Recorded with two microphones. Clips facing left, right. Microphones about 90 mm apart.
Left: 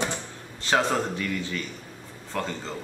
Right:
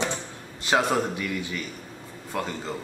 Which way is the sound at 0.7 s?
10° right (ahead or behind).